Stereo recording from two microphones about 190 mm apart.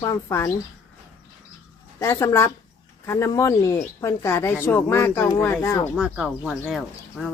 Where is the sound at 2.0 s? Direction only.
15° left (ahead or behind).